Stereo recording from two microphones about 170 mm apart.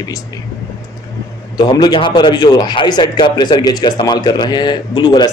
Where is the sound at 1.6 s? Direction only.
25° left (ahead or behind).